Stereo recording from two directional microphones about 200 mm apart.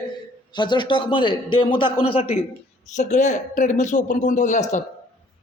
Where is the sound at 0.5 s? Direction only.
20° left (ahead or behind).